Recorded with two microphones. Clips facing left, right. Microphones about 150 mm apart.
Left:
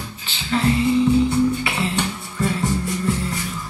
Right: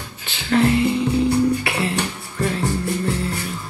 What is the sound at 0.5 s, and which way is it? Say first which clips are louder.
Music: right 2 dB; 65° right (ahead or behind).